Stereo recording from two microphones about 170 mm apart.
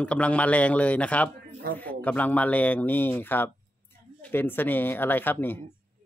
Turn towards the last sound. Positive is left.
turn(degrees=10)  # may be behind; listen again after turning